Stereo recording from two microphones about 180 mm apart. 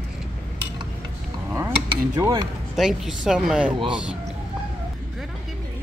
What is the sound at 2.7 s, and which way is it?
Speech, centre (ahead or behind).